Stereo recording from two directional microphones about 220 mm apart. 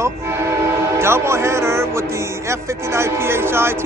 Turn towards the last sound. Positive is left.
turn(degrees=-10)  # may be behind; listen again after turning